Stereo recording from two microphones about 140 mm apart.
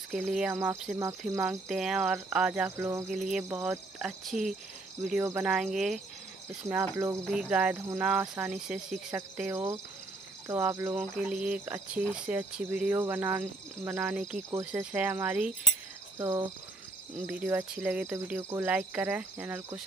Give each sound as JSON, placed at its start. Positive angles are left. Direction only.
{"t": 0.1, "sound": "speech", "side_deg": 0}
{"t": 0.5, "sound": "cricket", "side_deg": -20}
{"t": 1.7, "sound": "speech", "side_deg": -5}
{"t": 2.8, "sound": "cricket", "side_deg": -20}
{"t": 3.1, "sound": "speech", "side_deg": 0}
{"t": 3.4, "sound": "cricket", "side_deg": -15}
{"t": 5.2, "sound": "speech", "side_deg": -10}
{"t": 6.7, "sound": "cricket", "side_deg": -20}
{"t": 7.2, "sound": "cricket", "side_deg": -5}
{"t": 16.2, "sound": "cricket", "side_deg": -25}
{"t": 17.3, "sound": "cricket", "side_deg": -10}